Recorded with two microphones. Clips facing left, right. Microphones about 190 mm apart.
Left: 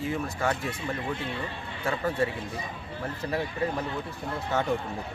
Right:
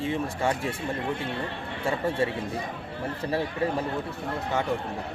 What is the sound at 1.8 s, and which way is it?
Speech, 30° right (ahead or behind).